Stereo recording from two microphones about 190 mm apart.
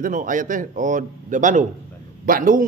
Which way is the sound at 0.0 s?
45° right (ahead or behind).